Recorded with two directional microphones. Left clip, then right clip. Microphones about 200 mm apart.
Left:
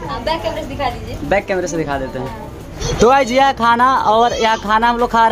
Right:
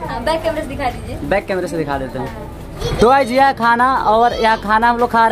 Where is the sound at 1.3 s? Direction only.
Centre (ahead or behind).